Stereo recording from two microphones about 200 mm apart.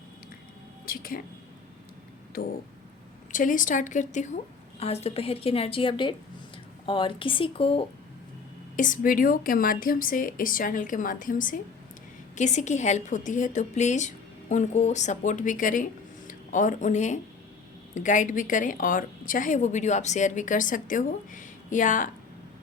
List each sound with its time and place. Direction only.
0.9 s speech: 45° left (ahead or behind)
3.3 s a woman's voice: 40° left (ahead or behind)
8.7 s a woman's voice: 40° left (ahead or behind)